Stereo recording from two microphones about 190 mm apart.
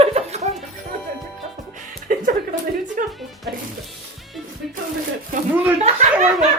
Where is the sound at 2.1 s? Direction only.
45° right (ahead or behind).